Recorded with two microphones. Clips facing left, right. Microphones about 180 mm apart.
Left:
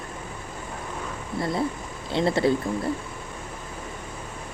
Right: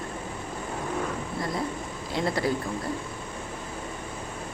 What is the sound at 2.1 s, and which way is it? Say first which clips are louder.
Speech: left 5 dB; 25° left (ahead or behind).